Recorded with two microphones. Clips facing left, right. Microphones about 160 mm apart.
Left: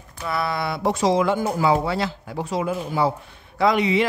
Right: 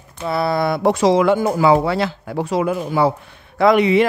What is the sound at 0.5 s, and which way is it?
A man's voice, 50° right (ahead or behind).